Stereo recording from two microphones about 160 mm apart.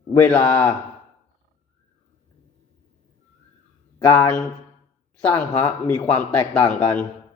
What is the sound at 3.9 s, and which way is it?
Speech, 25° left (ahead or behind).